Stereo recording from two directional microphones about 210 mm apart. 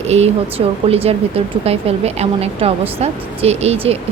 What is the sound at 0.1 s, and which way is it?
A woman's voice, 30° right (ahead or behind).